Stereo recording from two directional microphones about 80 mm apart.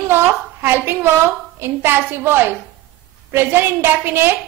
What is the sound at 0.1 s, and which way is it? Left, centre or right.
A woman's voice, right.